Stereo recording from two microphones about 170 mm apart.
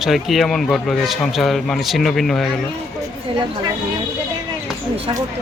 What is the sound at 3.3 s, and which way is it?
Speech, 30° right (ahead or behind).